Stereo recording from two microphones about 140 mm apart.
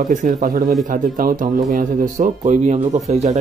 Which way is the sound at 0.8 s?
70° right (ahead or behind).